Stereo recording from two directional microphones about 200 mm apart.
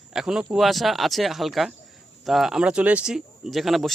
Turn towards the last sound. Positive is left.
turn(degrees=0)  # may be behind; listen again after turning